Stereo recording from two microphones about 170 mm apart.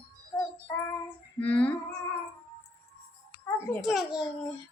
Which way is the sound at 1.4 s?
10° left (ahead or behind).